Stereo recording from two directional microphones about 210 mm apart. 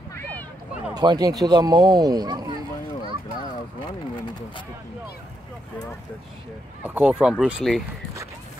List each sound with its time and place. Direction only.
0.1 s a sound: 10° left (ahead or behind)
0.9 s speech: 20° right (ahead or behind)
6.8 s speech: 5° right (ahead or behind)